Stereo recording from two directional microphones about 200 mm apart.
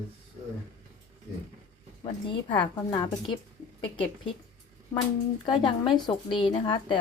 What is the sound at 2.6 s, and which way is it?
Speech, 20° left (ahead or behind).